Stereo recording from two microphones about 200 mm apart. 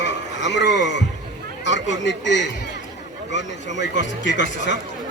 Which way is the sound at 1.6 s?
65° left (ahead or behind).